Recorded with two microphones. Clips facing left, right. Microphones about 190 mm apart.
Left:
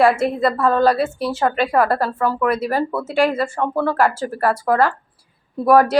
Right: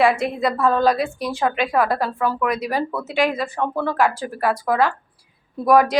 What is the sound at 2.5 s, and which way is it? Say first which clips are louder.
Speech: left 3 dB; 10° right (ahead or behind).